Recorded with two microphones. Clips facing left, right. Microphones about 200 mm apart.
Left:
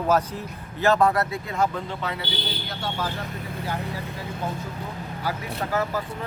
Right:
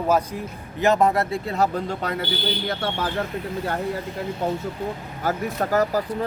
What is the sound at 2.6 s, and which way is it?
Speech, 55° right (ahead or behind).